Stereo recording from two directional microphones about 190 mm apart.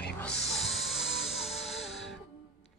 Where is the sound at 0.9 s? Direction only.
Centre (ahead or behind).